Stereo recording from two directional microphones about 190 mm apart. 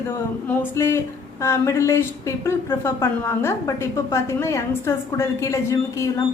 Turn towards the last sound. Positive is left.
turn(degrees=15)  # may be behind; listen again after turning